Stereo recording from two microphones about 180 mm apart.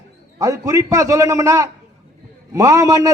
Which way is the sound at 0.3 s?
20° right (ahead or behind).